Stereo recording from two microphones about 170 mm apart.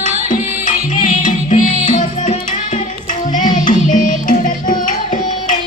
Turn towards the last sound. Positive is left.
turn(degrees=50)  # may be behind; listen again after turning